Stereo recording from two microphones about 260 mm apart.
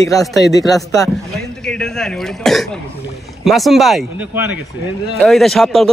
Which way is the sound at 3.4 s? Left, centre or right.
Centre.